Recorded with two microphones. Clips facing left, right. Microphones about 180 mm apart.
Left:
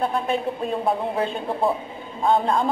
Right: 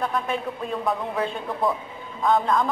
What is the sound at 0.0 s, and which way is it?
A woman's voice, 30° left (ahead or behind).